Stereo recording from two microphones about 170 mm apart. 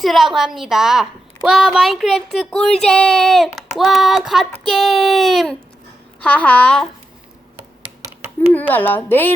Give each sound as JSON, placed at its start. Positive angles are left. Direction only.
{"t": 0.0, "sound": "a woman's voice", "side_deg": 0}
{"t": 8.5, "sound": "speech", "side_deg": 10}